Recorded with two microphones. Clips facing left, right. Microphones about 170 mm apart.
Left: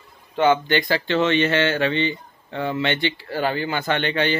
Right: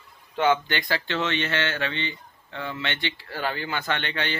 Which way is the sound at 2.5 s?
35° left (ahead or behind).